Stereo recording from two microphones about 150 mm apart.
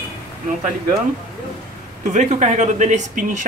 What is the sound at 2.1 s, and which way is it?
A man's voice, 50° right (ahead or behind).